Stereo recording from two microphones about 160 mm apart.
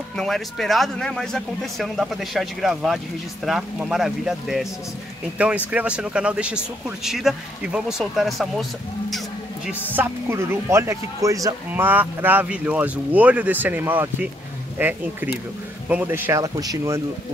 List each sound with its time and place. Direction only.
0.2 s speech: centre (ahead or behind)
5.7 s speech: 10° right (ahead or behind)
9.7 s speech: 15° right (ahead or behind)